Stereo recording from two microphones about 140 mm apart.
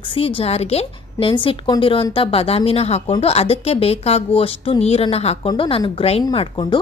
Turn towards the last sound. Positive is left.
turn(degrees=35)  # may be behind; listen again after turning